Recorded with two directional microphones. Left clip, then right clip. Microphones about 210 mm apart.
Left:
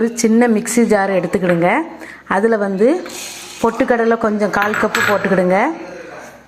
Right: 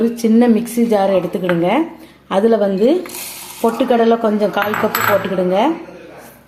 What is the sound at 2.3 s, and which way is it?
A woman's voice, 15° left (ahead or behind).